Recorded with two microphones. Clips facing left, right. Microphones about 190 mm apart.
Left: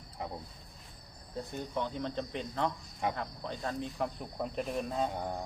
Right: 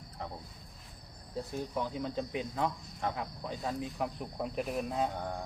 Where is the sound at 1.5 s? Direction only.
5° right (ahead or behind).